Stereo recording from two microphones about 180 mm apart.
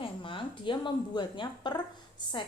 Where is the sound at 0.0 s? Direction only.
30° left (ahead or behind).